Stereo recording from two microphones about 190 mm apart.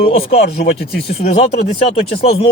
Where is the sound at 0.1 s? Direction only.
35° left (ahead or behind).